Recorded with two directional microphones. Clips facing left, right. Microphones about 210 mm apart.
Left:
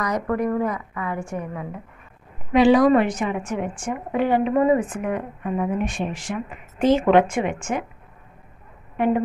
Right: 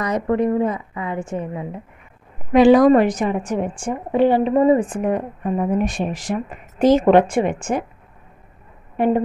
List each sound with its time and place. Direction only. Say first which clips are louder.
0.0 s a woman's voice: right 4 dB; 25° right (ahead or behind)
2.5 s a woman's voice: right 4 dB; 45° right (ahead or behind)
8.9 s a woman's voice: right 3 dB; 35° right (ahead or behind)